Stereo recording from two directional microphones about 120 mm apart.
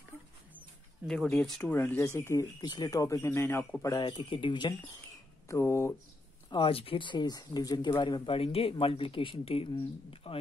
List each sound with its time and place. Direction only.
1.0 s speech: 5° left (ahead or behind)
1.6 s speech: 15° left (ahead or behind)
2.6 s speech: 35° left (ahead or behind)
4.1 s speech: 45° left (ahead or behind)
5.5 s speech: 25° left (ahead or behind)
6.5 s speech: 45° left (ahead or behind)
8.4 s speech: 55° left (ahead or behind)